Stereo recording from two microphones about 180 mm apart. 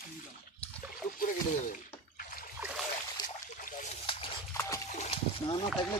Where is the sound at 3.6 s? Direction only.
45° left (ahead or behind).